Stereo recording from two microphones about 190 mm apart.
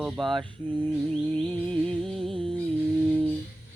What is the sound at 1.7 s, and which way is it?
Female singing, 5° left (ahead or behind).